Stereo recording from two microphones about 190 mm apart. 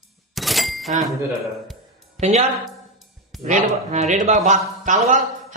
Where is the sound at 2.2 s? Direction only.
35° right (ahead or behind).